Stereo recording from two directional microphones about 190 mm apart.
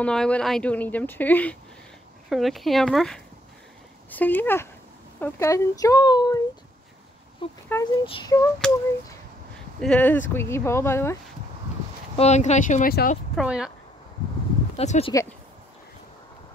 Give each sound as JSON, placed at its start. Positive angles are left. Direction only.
{"t": 0.0, "sound": "speech", "side_deg": 5}
{"t": 9.8, "sound": "speech", "side_deg": 5}
{"t": 12.2, "sound": "speech", "side_deg": 35}
{"t": 13.4, "sound": "speech", "side_deg": -5}
{"t": 14.8, "sound": "speech", "side_deg": 30}